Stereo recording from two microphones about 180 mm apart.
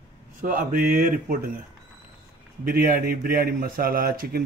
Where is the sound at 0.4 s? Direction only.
50° right (ahead or behind).